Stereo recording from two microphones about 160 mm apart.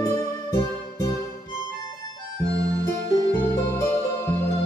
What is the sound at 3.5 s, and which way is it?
Music, 20° left (ahead or behind).